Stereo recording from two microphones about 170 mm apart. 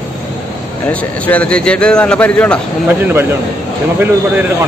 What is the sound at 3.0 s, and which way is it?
Speech, 15° right (ahead or behind).